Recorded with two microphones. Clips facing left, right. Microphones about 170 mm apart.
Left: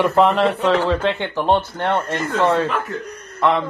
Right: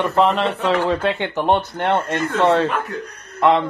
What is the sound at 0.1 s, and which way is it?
Speech, centre (ahead or behind).